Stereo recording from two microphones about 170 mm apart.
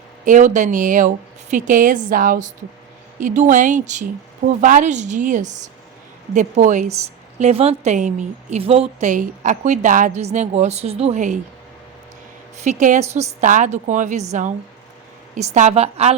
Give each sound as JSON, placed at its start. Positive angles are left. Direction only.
{"t": 0.3, "sound": "a woman's voice", "side_deg": -45}
{"t": 12.6, "sound": "a woman's voice", "side_deg": -45}